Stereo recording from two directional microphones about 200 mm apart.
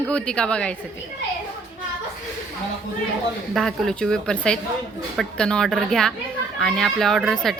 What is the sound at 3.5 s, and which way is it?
Speech, centre (ahead or behind).